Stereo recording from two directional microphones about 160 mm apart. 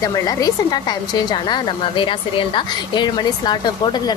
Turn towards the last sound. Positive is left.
turn(degrees=30)  # may be behind; listen again after turning